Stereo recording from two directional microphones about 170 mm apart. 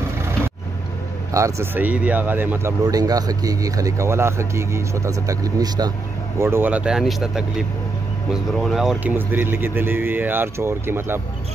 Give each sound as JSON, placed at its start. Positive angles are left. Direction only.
{"t": 1.3, "sound": "speech", "side_deg": -15}
{"t": 2.8, "sound": "speech", "side_deg": -20}
{"t": 6.4, "sound": "speech", "side_deg": -10}
{"t": 9.1, "sound": "speech", "side_deg": -10}